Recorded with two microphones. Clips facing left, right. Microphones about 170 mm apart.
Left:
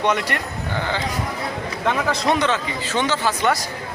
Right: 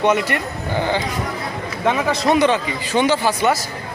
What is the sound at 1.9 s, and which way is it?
A man's voice, 5° right (ahead or behind).